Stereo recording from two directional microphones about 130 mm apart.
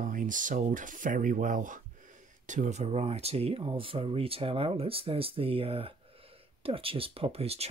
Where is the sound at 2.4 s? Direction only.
70° right (ahead or behind).